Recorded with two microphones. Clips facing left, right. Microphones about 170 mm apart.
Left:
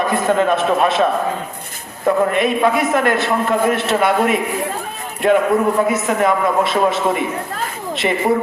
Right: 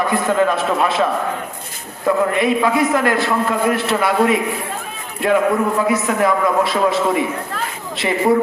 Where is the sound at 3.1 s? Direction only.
25° left (ahead or behind).